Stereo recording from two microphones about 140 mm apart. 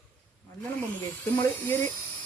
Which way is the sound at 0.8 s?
15° left (ahead or behind).